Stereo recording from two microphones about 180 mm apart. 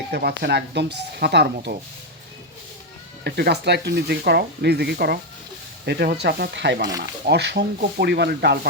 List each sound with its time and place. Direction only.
0.1 s speech: 65° right (ahead or behind)
3.2 s speech: 65° right (ahead or behind)